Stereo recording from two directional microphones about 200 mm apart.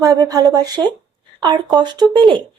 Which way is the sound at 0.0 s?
15° right (ahead or behind).